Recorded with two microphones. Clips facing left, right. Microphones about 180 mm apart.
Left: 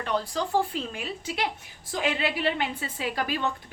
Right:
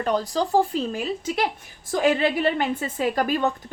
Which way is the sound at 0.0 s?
40° right (ahead or behind).